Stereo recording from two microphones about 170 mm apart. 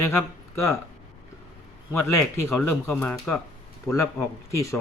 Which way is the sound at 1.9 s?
15° left (ahead or behind).